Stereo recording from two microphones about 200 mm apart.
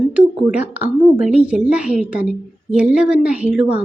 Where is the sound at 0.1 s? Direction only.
5° right (ahead or behind).